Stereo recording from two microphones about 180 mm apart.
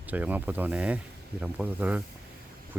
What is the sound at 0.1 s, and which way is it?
Speech, 10° right (ahead or behind).